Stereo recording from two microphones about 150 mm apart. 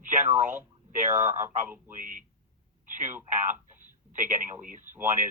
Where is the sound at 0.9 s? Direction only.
55° right (ahead or behind).